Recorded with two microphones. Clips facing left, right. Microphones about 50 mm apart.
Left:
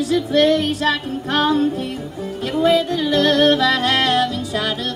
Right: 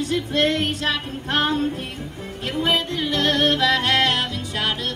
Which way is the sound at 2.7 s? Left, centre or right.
Right.